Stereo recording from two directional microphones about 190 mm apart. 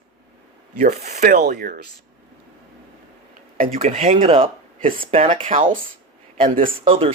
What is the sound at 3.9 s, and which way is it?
Speech, 30° right (ahead or behind).